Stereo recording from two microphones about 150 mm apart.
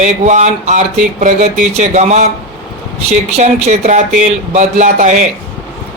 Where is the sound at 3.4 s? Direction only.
45° right (ahead or behind).